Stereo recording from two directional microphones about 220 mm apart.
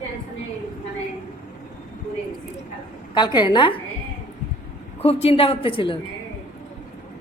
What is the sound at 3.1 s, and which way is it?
Speech, 20° left (ahead or behind).